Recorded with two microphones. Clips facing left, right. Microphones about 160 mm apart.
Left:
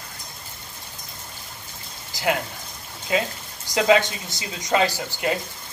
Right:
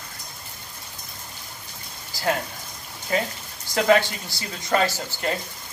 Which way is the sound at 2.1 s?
20° left (ahead or behind).